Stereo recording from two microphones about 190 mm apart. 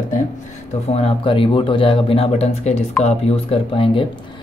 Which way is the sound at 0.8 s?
30° left (ahead or behind).